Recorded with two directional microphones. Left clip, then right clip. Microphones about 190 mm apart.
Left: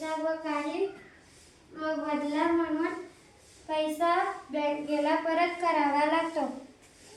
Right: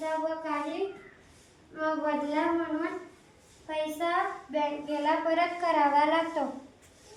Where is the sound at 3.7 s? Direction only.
5° left (ahead or behind).